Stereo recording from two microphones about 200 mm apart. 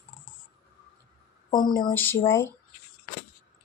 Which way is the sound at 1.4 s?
20° left (ahead or behind).